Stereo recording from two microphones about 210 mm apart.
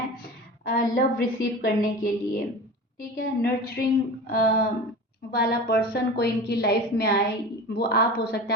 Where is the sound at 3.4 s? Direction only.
45° left (ahead or behind).